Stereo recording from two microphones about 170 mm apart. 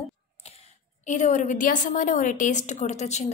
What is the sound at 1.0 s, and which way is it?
A woman's voice, 45° left (ahead or behind).